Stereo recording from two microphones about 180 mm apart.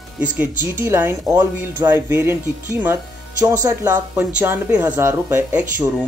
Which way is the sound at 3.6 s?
10° right (ahead or behind).